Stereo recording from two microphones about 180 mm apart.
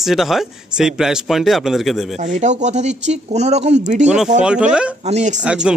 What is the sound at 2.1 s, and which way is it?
Speech, 40° right (ahead or behind).